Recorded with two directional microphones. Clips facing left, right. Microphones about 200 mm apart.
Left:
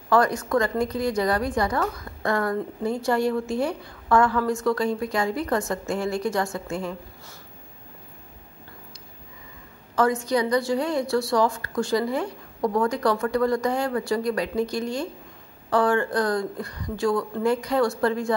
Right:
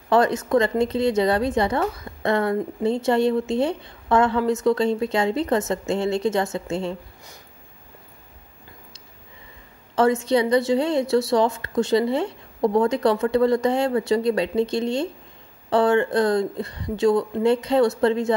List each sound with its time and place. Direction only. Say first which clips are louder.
0.1 s a woman's voice: right 3 dB; 25° right (ahead or behind)
9.9 s a woman's voice: right 3 dB; 25° right (ahead or behind)